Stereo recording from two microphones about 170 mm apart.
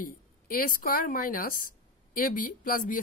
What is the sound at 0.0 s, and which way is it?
A woman's voice, 55° left (ahead or behind).